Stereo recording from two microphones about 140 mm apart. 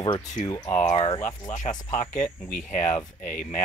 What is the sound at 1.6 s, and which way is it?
Speech, 55° left (ahead or behind).